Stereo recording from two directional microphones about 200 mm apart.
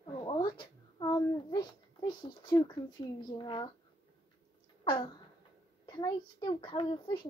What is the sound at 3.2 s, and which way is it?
Speech, 20° left (ahead or behind).